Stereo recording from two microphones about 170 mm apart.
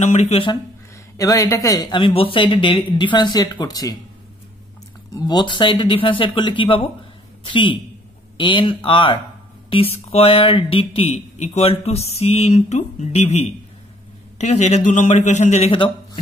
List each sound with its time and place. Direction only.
0.0 s speech: 40° left (ahead or behind)
1.1 s speech: 20° left (ahead or behind)
5.2 s speech: 25° left (ahead or behind)